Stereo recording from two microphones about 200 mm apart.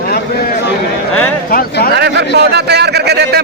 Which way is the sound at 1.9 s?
55° right (ahead or behind).